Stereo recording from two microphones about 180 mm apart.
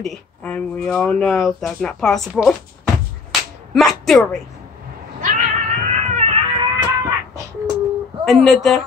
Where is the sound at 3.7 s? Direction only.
Centre (ahead or behind).